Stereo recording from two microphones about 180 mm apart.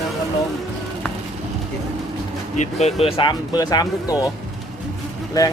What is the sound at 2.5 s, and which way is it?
Speech, 40° left (ahead or behind).